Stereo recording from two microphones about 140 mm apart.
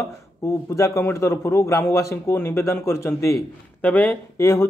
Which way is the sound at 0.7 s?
20° left (ahead or behind).